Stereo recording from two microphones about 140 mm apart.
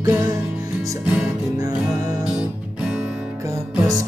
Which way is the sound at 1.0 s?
10° right (ahead or behind).